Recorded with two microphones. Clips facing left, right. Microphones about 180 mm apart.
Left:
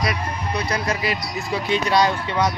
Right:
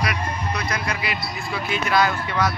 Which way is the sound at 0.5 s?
35° left (ahead or behind).